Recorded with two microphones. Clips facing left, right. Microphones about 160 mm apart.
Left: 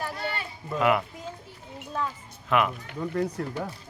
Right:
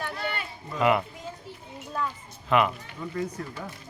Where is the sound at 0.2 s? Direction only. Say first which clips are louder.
Even; 35° left (ahead or behind).